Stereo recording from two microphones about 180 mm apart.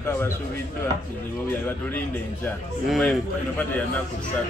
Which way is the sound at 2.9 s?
5° left (ahead or behind).